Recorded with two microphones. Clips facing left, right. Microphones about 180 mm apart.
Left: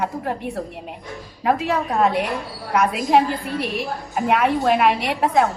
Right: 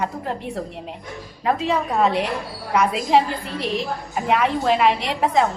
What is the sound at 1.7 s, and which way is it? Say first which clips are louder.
A woman's voice: even; centre (ahead or behind).